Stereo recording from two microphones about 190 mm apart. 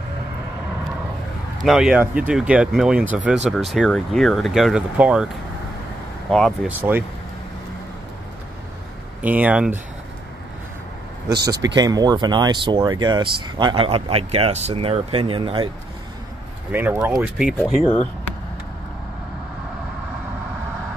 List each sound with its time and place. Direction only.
1.6 s speech: centre (ahead or behind)
6.8 s speech: 10° right (ahead or behind)
9.2 s speech: 10° right (ahead or behind)
11.4 s speech: 20° right (ahead or behind)
16.7 s speech: 10° right (ahead or behind)